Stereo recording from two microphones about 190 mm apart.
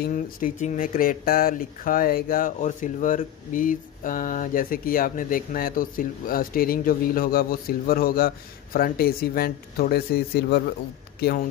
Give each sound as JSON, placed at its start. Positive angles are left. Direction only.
{"t": 0.0, "sound": "speech", "side_deg": 45}